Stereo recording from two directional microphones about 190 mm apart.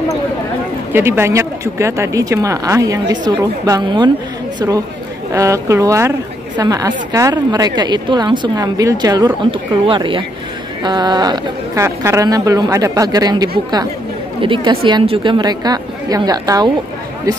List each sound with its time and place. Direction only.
0.9 s a woman's voice: 10° right (ahead or behind)